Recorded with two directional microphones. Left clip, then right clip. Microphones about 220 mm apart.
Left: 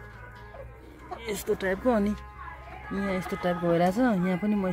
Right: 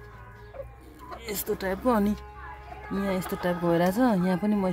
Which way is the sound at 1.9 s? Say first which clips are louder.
Right 3 dB; 20° right (ahead or behind).